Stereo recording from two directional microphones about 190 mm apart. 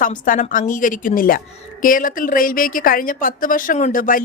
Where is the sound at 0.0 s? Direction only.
45° left (ahead or behind).